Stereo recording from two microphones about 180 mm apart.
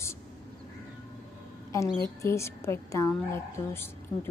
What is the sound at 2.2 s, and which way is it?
A woman's voice, 15° left (ahead or behind).